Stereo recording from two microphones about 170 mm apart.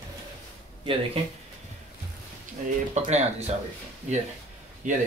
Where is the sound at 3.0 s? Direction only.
45° right (ahead or behind).